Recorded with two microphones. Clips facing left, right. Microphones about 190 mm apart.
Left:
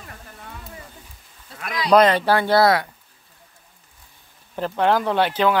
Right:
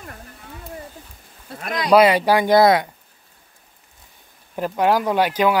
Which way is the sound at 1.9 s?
10° right (ahead or behind).